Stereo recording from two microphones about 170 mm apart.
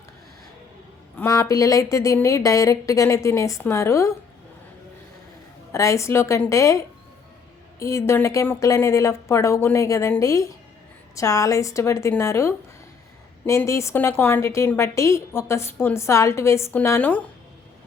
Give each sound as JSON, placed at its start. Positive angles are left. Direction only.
{"t": 1.1, "sound": "a woman's voice", "side_deg": 15}
{"t": 5.7, "sound": "a woman's voice", "side_deg": 15}